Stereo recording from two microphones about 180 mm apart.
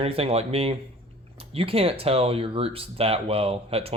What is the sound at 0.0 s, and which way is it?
Speech, 35° right (ahead or behind).